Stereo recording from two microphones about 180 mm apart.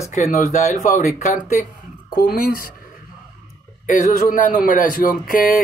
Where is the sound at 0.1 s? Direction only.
40° left (ahead or behind).